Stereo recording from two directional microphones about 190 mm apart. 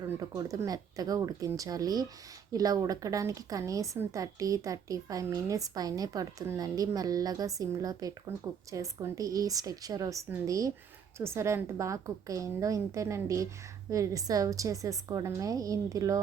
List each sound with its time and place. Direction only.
0.0 s a woman's voice: 20° right (ahead or behind)